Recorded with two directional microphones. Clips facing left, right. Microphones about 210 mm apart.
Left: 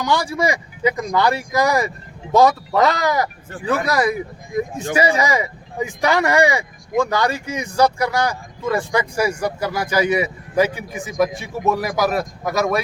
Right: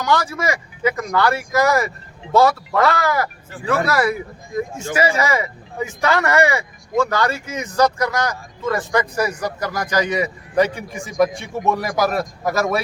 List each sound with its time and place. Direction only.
0.0 s speech: 15° left (ahead or behind)